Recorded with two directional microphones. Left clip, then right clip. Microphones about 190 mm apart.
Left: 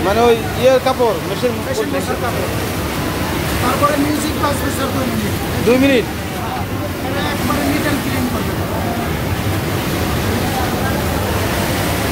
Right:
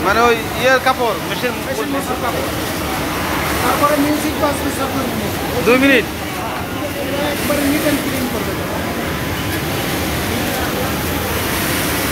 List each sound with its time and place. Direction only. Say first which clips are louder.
0.2 s speech: left 1 dB; 20° left (ahead or behind)
5.7 s speech: right 1 dB; 20° left (ahead or behind)